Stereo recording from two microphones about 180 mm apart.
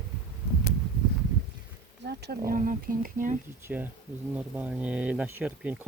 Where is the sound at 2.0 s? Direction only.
65° right (ahead or behind); by 3.4 s 50° right (ahead or behind).